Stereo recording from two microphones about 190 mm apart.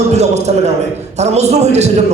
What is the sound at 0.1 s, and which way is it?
A man's voice, 35° right (ahead or behind).